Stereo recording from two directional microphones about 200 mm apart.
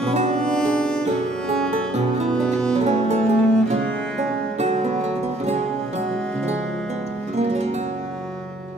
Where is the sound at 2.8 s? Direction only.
35° right (ahead or behind).